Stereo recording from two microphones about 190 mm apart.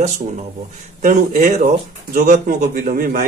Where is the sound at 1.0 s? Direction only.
45° right (ahead or behind).